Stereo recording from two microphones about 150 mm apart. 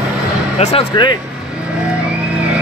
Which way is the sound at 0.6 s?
45° left (ahead or behind).